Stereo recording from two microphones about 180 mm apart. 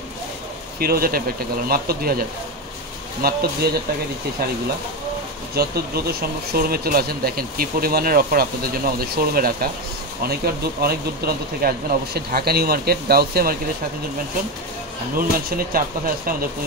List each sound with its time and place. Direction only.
0.7 s speech: 55° right (ahead or behind)
5.5 s speech: 60° right (ahead or behind)
15.1 s speech: 55° right (ahead or behind)